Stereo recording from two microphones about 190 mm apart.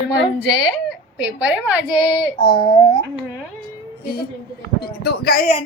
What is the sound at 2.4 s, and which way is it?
Speech, 25° left (ahead or behind).